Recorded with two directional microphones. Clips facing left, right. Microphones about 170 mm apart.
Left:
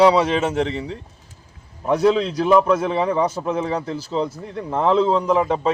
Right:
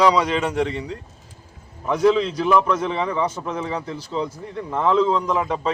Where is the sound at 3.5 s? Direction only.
30° left (ahead or behind).